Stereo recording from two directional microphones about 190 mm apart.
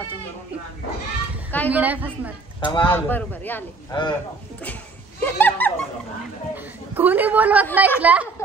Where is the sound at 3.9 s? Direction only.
25° left (ahead or behind).